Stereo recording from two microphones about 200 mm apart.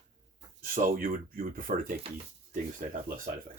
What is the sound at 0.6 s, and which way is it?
Speech, 45° right (ahead or behind).